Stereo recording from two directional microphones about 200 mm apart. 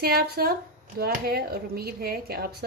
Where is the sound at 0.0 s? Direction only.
50° right (ahead or behind).